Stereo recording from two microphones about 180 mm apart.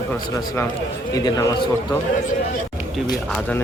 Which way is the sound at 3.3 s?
10° left (ahead or behind).